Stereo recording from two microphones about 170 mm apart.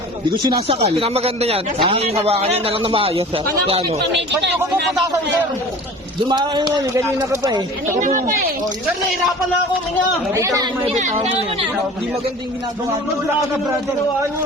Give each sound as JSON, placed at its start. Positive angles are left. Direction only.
{"t": 0.4, "sound": "speech", "side_deg": -30}
{"t": 6.2, "sound": "speech", "side_deg": -25}
{"t": 10.3, "sound": "speech", "side_deg": -20}
{"t": 10.8, "sound": "speech", "side_deg": -40}